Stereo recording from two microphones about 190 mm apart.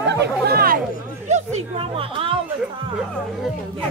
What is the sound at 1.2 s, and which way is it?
Speech, 35° right (ahead or behind).